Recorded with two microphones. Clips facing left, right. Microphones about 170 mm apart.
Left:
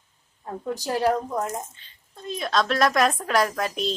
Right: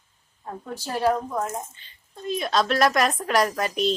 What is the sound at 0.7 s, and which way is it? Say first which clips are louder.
Speech: left 1 dB; 15° left (ahead or behind).